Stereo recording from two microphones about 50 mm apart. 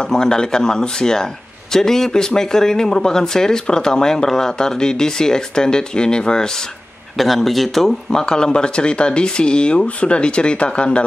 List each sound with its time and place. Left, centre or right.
0.1 s speech: centre
7.2 s speech: centre; by 11.1 s left